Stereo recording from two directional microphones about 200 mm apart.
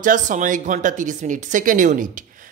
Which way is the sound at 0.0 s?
40° right (ahead or behind).